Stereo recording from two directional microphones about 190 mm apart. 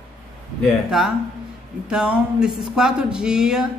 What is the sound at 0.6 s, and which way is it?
Speech, centre (ahead or behind).